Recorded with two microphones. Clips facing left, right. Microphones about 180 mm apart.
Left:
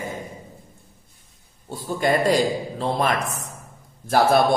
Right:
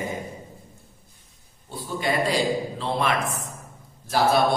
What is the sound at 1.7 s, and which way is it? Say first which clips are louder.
A man's voice: left 5 dB; 45° left (ahead or behind).